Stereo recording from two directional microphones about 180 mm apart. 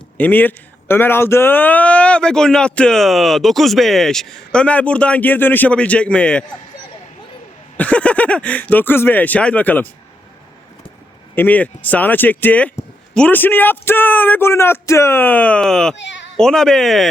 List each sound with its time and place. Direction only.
0.2 s speech: 10° left (ahead or behind)
7.8 s speech: 5° left (ahead or behind)
11.3 s speech: 10° left (ahead or behind)
16.0 s baby cry: 80° left
16.4 s speech: 5° left (ahead or behind)